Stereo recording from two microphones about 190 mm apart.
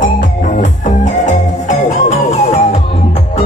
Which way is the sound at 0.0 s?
45° left (ahead or behind).